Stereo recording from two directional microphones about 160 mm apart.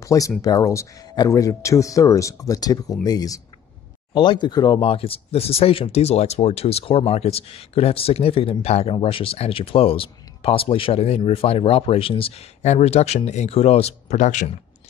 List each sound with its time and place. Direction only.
0.0 s speech: 20° left (ahead or behind); by 14.5 s 50° left (ahead or behind)